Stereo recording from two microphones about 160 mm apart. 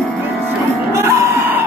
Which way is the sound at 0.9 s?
20° right (ahead or behind).